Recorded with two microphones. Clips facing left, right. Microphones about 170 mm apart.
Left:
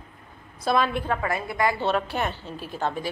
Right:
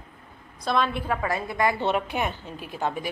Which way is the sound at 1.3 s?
20° right (ahead or behind).